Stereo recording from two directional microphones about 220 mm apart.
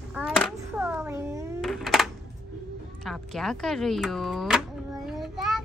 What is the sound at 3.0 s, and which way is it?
Speech, centre (ahead or behind).